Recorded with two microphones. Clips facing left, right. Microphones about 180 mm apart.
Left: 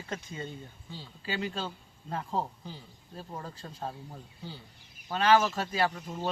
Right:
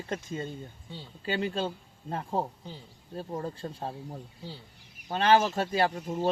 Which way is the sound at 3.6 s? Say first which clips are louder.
Right 7 dB; 35° right (ahead or behind).